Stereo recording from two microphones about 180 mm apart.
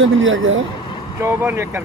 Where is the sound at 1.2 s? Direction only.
15° right (ahead or behind).